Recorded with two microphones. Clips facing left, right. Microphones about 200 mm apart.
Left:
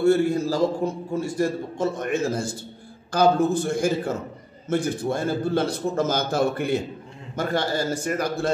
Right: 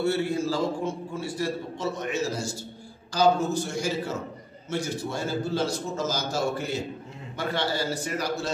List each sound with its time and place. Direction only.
0.0 s a man's voice: 50° left (ahead or behind)
7.3 s a man's voice: 45° left (ahead or behind)